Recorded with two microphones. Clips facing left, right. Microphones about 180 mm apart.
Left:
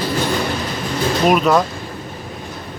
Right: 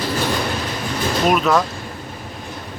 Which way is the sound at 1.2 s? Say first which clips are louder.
Left 2 dB; centre (ahead or behind).